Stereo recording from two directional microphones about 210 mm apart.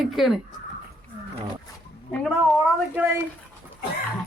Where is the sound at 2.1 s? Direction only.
5° left (ahead or behind).